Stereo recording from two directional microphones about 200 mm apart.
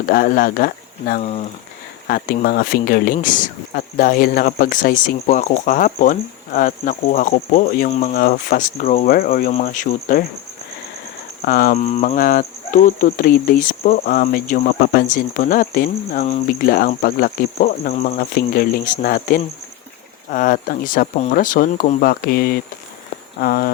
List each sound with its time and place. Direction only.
0.1 s speech: 45° left (ahead or behind)
1.2 s speech: 30° left (ahead or behind)
2.0 s speech: 45° left (ahead or behind)
11.4 s speech: 45° left (ahead or behind)